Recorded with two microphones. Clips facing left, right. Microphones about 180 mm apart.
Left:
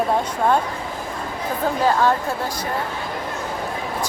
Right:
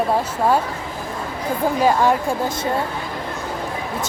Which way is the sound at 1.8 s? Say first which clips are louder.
Right 1 dB; 15° right (ahead or behind).